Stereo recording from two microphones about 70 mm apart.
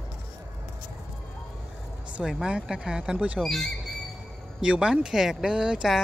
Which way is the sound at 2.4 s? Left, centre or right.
Centre.